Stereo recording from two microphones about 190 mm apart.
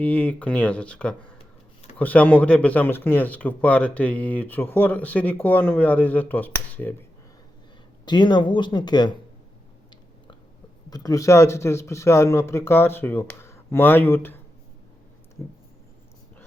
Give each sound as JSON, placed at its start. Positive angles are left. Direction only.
{"t": 0.0, "sound": "speech", "side_deg": 10}
{"t": 8.0, "sound": "speech", "side_deg": 25}
{"t": 10.8, "sound": "speech", "side_deg": 20}